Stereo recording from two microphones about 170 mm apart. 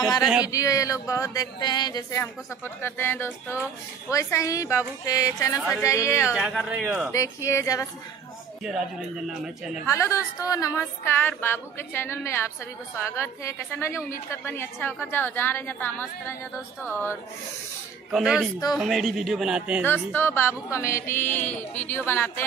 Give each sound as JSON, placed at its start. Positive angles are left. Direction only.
{"t": 0.2, "sound": "speech", "side_deg": -5}
{"t": 0.5, "sound": "a woman's voice", "side_deg": 20}
{"t": 6.3, "sound": "speech", "side_deg": -5}
{"t": 7.1, "sound": "a woman's voice", "side_deg": 15}
{"t": 9.8, "sound": "a woman's voice", "side_deg": 15}
{"t": 18.1, "sound": "speech", "side_deg": 0}
{"t": 19.8, "sound": "a woman's voice", "side_deg": 10}